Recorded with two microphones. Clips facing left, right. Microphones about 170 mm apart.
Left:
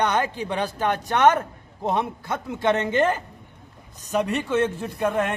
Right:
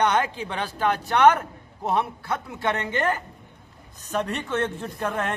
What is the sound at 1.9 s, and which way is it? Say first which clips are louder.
A man's voice: right 3 dB; 20° left (ahead or behind).